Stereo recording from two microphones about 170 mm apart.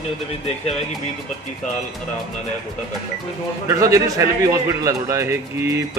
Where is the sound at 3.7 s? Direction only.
20° right (ahead or behind).